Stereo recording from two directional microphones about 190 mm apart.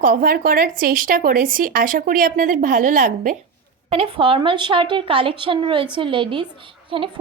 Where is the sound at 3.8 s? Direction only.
30° right (ahead or behind).